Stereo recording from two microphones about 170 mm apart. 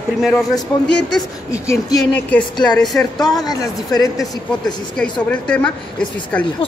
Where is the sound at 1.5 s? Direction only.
20° left (ahead or behind).